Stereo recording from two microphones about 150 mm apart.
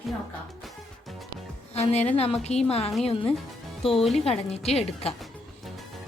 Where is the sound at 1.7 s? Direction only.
45° left (ahead or behind).